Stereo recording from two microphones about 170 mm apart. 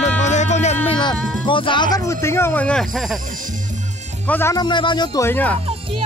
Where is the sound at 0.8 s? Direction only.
25° left (ahead or behind).